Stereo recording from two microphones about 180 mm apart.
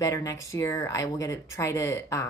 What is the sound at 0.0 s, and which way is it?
Speech, 20° left (ahead or behind).